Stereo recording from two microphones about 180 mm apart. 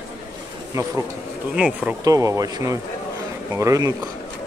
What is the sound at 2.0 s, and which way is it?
Speech, 20° right (ahead or behind).